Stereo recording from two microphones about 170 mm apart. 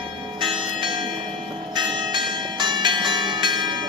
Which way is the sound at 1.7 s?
25° right (ahead or behind).